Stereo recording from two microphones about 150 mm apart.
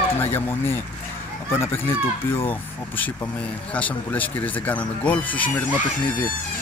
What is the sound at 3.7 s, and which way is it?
Speech, 10° left (ahead or behind).